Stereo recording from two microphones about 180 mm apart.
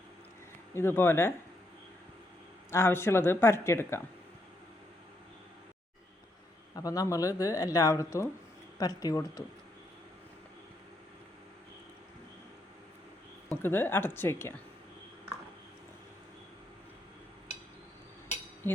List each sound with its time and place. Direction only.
0.7 s speech: 15° left (ahead or behind)
2.6 s speech: 15° left (ahead or behind)
6.7 s speech: 20° left (ahead or behind)
13.5 s speech: 10° left (ahead or behind)